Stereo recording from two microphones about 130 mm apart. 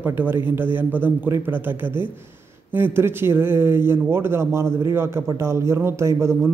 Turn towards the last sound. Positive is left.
turn(degrees=-20)  # may be behind; listen again after turning